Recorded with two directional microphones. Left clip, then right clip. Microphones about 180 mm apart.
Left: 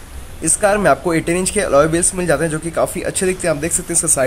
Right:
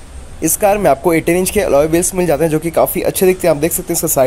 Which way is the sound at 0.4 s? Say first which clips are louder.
Right 3 dB; 25° right (ahead or behind).